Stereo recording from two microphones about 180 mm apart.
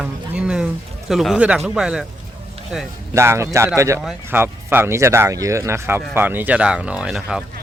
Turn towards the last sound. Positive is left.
turn(degrees=-5)  # may be behind; listen again after turning